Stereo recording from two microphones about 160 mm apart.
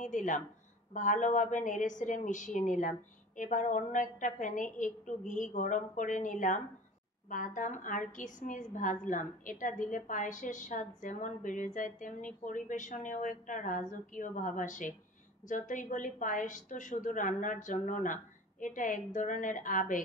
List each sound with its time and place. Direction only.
0.0 s a woman's voice: 50° left (ahead or behind)